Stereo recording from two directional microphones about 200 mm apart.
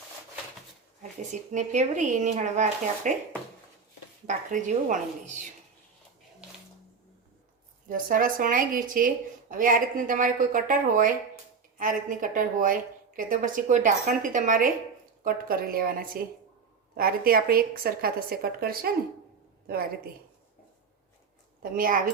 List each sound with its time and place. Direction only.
1.3 s a woman's voice: 35° right (ahead or behind)
4.3 s a woman's voice: 40° right (ahead or behind)
7.9 s a woman's voice: 45° right (ahead or behind)
21.6 s a woman's voice: 45° right (ahead or behind)